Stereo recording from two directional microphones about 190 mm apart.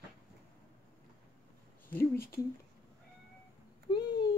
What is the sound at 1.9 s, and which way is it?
Speech, 10° left (ahead or behind).